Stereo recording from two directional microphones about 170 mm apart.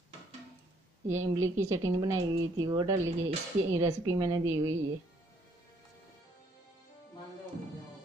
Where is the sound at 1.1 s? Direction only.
15° right (ahead or behind).